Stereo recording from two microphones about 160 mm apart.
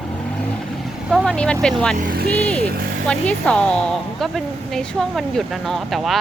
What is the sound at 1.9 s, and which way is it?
Speech, 70° right (ahead or behind).